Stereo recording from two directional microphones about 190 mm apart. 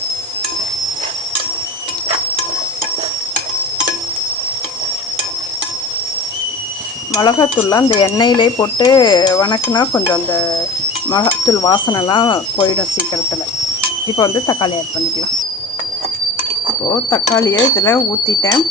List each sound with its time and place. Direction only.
7.1 s speech: 20° left (ahead or behind)
14.2 s speech: 25° left (ahead or behind)
16.9 s speech: 15° left (ahead or behind)